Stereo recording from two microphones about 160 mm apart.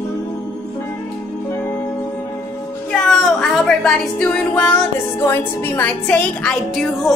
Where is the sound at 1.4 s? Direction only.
15° left (ahead or behind).